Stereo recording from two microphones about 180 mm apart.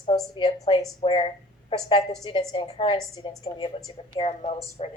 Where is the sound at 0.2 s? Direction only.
25° left (ahead or behind).